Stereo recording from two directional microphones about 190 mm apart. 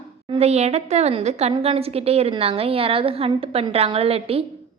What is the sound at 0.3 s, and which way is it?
A woman's voice, 35° right (ahead or behind).